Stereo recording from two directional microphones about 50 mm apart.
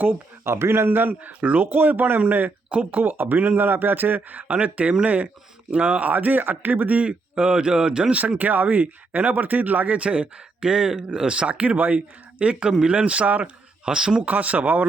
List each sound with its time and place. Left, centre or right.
0.4 s a man's voice: right
0.9 s speech: right
7.1 s speech: right
8.4 s speech: right
13.4 s speech: centre
14.3 s speech: right